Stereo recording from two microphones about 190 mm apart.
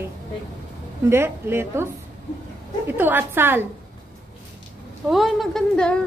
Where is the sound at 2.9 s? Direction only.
10° right (ahead or behind).